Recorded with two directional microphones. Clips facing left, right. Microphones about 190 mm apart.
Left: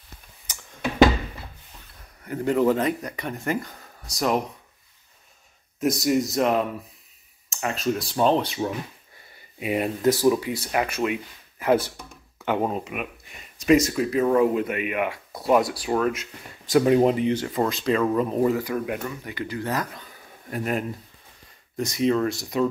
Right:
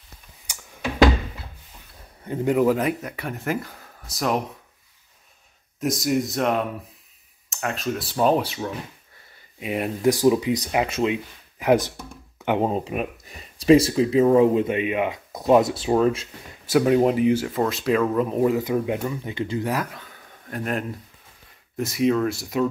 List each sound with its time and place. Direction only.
0.5 s a sound: 10° right (ahead or behind)
2.2 s speech: 20° right (ahead or behind); by 4.4 s centre (ahead or behind)
5.8 s speech: centre (ahead or behind)
9.6 s speech: 5° left (ahead or behind)
10.0 s speech: 15° right (ahead or behind)
12.7 s speech: 35° right (ahead or behind)
16.6 s speech: 5° right (ahead or behind)
18.5 s speech: 20° right (ahead or behind)
19.6 s speech: 10° right (ahead or behind)